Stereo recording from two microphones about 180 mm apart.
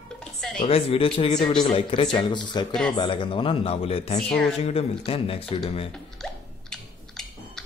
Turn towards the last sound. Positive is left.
turn(degrees=5)  # may be behind; listen again after turning